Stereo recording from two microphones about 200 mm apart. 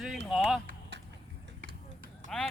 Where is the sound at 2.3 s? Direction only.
5° left (ahead or behind).